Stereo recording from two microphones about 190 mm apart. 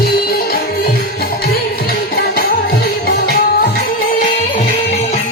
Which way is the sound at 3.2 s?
55° left (ahead or behind).